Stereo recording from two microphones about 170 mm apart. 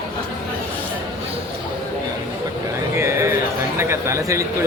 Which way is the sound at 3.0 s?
15° right (ahead or behind).